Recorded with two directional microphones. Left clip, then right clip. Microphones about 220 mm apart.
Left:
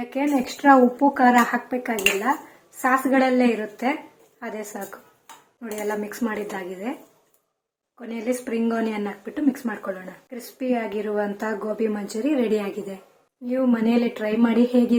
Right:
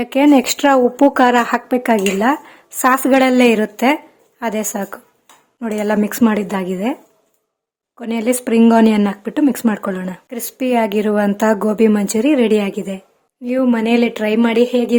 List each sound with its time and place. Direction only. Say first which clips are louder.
0.0 s speech: right 12 dB; 55° right (ahead or behind)
7.9 s speech: right 9 dB; 50° right (ahead or behind)